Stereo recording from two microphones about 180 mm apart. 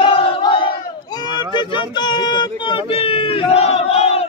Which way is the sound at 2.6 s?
30° left (ahead or behind).